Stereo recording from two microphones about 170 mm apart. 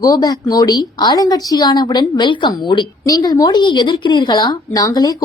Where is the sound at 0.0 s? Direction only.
20° left (ahead or behind).